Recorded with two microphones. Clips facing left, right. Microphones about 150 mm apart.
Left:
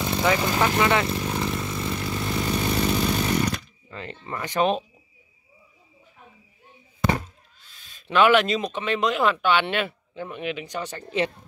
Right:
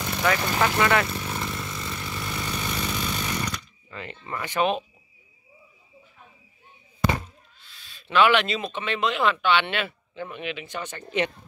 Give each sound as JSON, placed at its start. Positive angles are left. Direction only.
{"t": 0.0, "sound": "speech", "side_deg": 20}
{"t": 1.4, "sound": "a sound", "side_deg": 25}
{"t": 2.7, "sound": "chainsaw", "side_deg": 45}
{"t": 3.9, "sound": "speech", "side_deg": 35}
{"t": 7.6, "sound": "speech", "side_deg": 45}